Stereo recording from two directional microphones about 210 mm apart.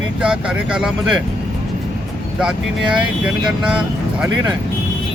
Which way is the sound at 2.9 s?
5° right (ahead or behind).